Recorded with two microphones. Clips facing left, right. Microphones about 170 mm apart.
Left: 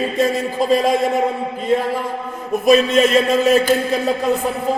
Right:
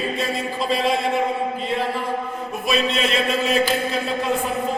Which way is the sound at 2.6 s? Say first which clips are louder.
Left 9 dB; 45° left (ahead or behind).